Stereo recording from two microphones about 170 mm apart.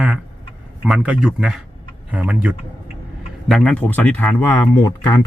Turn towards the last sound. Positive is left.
turn(degrees=15)  # may be behind; listen again after turning